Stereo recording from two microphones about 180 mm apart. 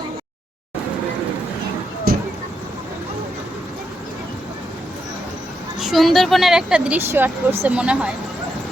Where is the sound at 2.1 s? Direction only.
55° right (ahead or behind).